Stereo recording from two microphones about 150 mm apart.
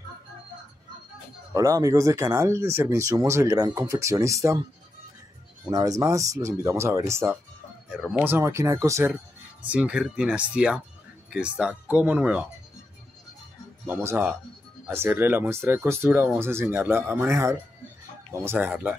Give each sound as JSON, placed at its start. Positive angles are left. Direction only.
{"t": 1.5, "sound": "speech", "side_deg": -20}
{"t": 5.7, "sound": "speech", "side_deg": -25}
{"t": 7.9, "sound": "speech", "side_deg": 0}
{"t": 8.2, "sound": "speech", "side_deg": -15}
{"t": 13.8, "sound": "speech", "side_deg": -15}